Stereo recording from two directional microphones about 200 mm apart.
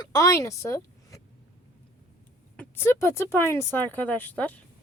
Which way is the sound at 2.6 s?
10° left (ahead or behind).